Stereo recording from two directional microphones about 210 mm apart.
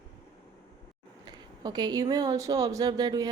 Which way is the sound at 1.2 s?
20° right (ahead or behind).